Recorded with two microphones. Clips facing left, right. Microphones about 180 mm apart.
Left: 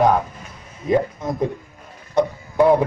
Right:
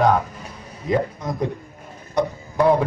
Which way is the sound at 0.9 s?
20° left (ahead or behind).